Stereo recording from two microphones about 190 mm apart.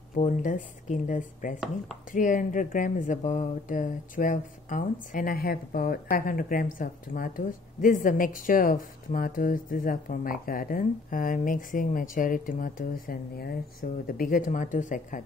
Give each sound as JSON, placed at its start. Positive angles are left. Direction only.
{"t": 0.1, "sound": "speech", "side_deg": 40}